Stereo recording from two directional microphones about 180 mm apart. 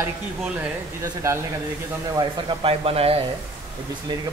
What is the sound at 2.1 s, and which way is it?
Speech, 30° right (ahead or behind).